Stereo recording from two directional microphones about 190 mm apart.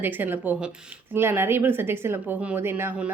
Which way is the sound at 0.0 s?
10° right (ahead or behind).